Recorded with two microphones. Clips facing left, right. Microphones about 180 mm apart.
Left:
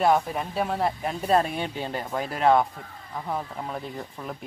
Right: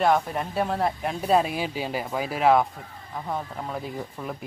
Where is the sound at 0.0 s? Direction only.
Centre (ahead or behind).